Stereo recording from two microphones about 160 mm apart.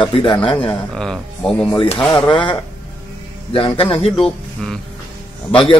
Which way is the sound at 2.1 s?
30° left (ahead or behind).